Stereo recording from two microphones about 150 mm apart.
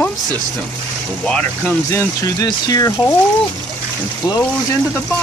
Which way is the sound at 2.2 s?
25° left (ahead or behind).